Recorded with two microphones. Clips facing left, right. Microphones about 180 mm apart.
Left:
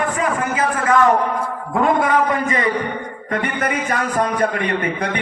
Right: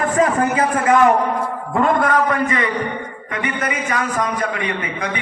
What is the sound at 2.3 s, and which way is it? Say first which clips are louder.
Speech: right 1 dB; 25° left (ahead or behind).